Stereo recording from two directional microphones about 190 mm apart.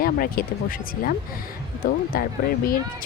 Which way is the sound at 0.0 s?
50° left (ahead or behind).